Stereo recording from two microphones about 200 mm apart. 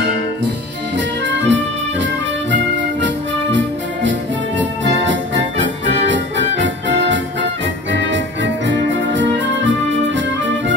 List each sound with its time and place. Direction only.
0.9 s music: 65° right (ahead or behind)
4.6 s music: 65° right (ahead or behind)